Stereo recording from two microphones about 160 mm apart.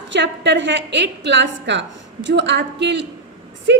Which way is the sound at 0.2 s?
90° right.